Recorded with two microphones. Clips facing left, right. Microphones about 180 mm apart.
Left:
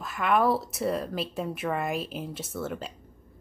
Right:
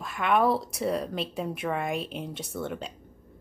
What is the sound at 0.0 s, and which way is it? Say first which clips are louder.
A woman's voice: even; centre (ahead or behind).